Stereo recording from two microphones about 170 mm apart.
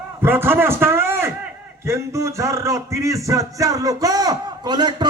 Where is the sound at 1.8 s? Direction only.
15° right (ahead or behind).